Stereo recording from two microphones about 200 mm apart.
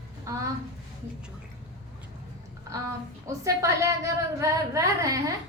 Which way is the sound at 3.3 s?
15° right (ahead or behind).